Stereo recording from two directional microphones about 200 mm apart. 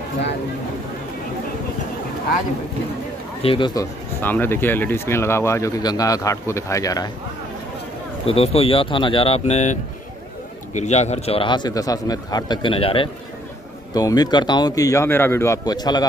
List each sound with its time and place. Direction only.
3.4 s a man's voice: 25° left (ahead or behind)
4.2 s speech: 10° left (ahead or behind)
8.3 s a man's voice: 30° left (ahead or behind)